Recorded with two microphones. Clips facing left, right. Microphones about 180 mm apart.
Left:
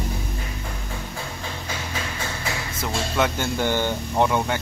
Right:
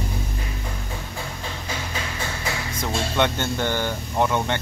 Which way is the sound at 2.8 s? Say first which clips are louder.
Right 1 dB; 5° left (ahead or behind).